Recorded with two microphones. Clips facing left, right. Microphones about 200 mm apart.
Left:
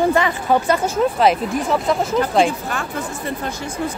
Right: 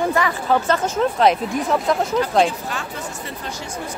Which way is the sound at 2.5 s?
50° left (ahead or behind).